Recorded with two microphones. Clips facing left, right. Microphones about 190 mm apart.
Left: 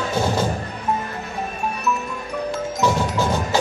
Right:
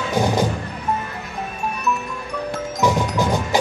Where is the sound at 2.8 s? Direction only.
15° right (ahead or behind).